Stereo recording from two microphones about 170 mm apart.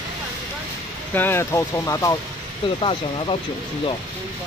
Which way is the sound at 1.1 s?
10° left (ahead or behind).